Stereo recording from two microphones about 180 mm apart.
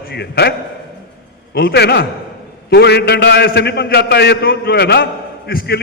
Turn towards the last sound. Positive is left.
turn(degrees=60)  # may be behind; listen again after turning